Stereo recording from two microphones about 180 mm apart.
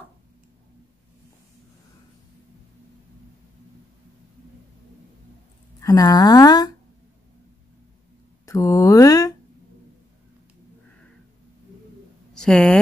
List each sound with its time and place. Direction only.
5.8 s speech: 20° left (ahead or behind)
8.5 s speech: 15° left (ahead or behind)
12.4 s speech: 5° left (ahead or behind)